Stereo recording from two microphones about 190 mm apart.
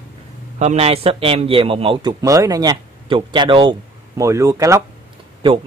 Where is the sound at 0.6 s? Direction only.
35° right (ahead or behind).